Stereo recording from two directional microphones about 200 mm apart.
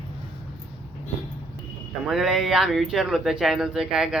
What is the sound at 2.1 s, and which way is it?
Speech, centre (ahead or behind).